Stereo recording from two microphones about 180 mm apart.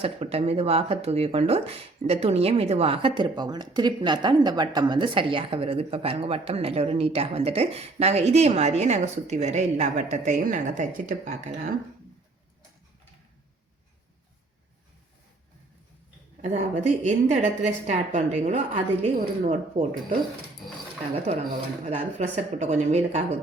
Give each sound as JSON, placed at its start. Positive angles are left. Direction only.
{"t": 0.0, "sound": "speech", "side_deg": -35}
{"t": 16.4, "sound": "speech", "side_deg": -40}
{"t": 21.8, "sound": "speech", "side_deg": -40}